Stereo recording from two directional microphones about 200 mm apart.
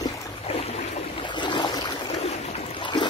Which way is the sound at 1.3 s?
25° left (ahead or behind).